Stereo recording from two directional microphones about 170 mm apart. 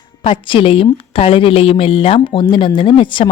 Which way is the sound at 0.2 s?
30° left (ahead or behind).